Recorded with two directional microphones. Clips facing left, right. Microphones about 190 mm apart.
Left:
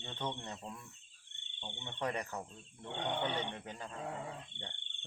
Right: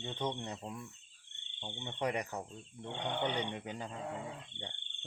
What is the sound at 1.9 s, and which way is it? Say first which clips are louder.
Speech: right 2 dB; 15° right (ahead or behind).